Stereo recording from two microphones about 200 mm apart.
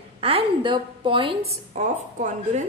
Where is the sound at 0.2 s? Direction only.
25° right (ahead or behind).